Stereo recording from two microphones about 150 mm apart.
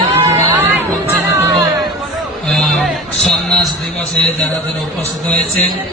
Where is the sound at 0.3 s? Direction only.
20° right (ahead or behind).